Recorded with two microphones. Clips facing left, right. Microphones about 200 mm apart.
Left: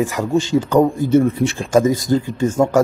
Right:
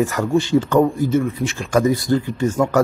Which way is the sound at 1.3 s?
25° left (ahead or behind).